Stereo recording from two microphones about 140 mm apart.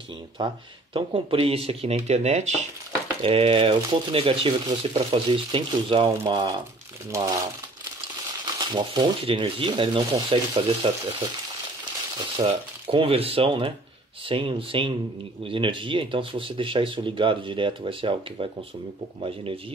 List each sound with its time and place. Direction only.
0.4 s speech: 35° right (ahead or behind); by 2.7 s 55° right (ahead or behind)
3.2 s speech: 40° right (ahead or behind)
8.5 s speech: 35° right (ahead or behind)
12.4 s speech: 40° right (ahead or behind)